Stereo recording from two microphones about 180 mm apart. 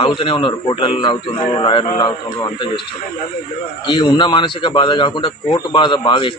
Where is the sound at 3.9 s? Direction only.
25° left (ahead or behind).